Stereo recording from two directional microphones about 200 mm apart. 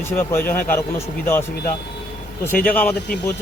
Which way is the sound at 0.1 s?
10° left (ahead or behind).